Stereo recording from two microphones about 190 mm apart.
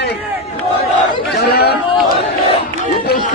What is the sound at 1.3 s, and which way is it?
Chatter, 60° left (ahead or behind).